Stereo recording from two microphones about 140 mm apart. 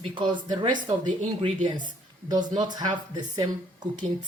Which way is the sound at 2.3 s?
30° right (ahead or behind).